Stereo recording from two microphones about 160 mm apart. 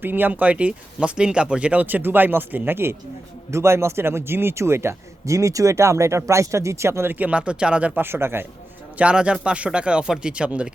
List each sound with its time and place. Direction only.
0.0 s speech: 10° right (ahead or behind)